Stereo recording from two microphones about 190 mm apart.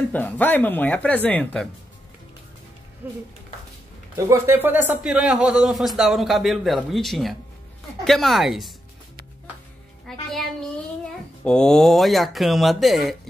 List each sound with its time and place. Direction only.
0.1 s speech: 10° left (ahead or behind)
3.0 s speech: 10° right (ahead or behind)
4.3 s speech: 10° right (ahead or behind)
10.1 s a child's voice: centre (ahead or behind)
11.4 s speech: 5° left (ahead or behind)